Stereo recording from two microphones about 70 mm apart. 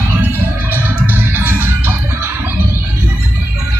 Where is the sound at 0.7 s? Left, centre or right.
Right.